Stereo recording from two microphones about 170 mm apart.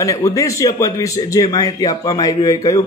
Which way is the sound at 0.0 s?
20° left (ahead or behind).